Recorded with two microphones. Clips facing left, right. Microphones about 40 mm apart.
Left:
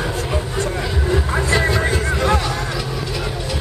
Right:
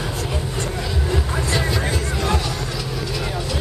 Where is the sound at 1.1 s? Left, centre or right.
Centre.